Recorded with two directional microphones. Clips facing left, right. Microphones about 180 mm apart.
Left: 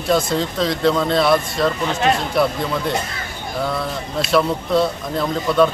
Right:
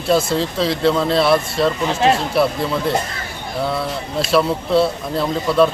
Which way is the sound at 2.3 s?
5° right (ahead or behind).